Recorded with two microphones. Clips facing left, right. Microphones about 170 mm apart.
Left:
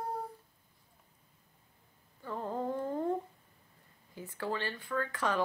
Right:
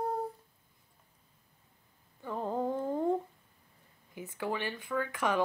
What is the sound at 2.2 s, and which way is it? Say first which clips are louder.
Humming: right 3 dB; 15° right (ahead or behind).